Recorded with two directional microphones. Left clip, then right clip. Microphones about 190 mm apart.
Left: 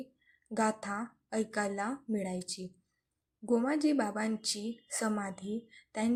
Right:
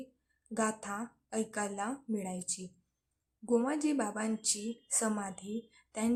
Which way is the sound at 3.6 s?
5° left (ahead or behind).